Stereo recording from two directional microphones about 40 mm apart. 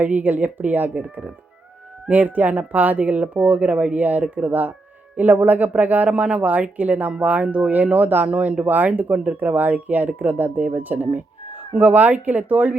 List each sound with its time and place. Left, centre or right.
0.0 s speech: right